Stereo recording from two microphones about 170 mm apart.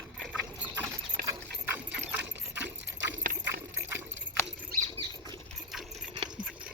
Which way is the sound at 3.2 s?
55° right (ahead or behind).